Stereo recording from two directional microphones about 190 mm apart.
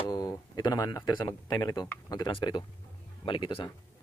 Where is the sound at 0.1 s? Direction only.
20° left (ahead or behind).